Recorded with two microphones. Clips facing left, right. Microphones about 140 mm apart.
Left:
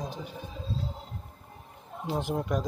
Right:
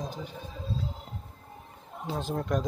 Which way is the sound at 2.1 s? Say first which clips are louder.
Left 2 dB; 15° left (ahead or behind).